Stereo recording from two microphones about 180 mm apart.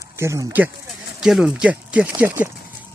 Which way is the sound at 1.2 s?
5° right (ahead or behind).